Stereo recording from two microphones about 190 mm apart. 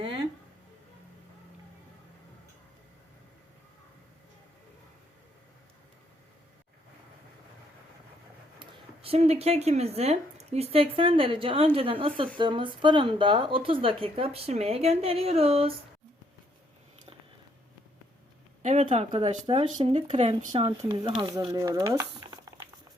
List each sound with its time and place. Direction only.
8.5 s speech: 30° right (ahead or behind)
18.6 s speech: 40° right (ahead or behind)
20.5 s speech: 25° right (ahead or behind)